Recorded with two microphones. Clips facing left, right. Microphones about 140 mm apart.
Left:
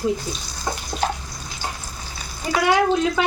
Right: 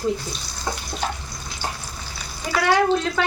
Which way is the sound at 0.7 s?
5° left (ahead or behind).